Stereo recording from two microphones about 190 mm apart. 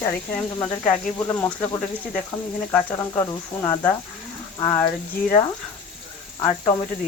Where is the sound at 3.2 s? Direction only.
15° left (ahead or behind).